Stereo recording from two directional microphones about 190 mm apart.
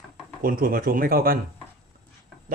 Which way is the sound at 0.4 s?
50° right (ahead or behind).